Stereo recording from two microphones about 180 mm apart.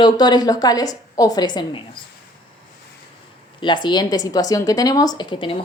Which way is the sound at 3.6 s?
25° left (ahead or behind).